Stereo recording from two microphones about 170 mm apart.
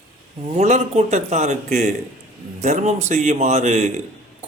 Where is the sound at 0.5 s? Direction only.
40° right (ahead or behind).